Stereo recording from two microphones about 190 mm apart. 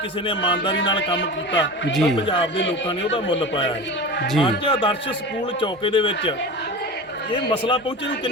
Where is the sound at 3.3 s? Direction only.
30° left (ahead or behind).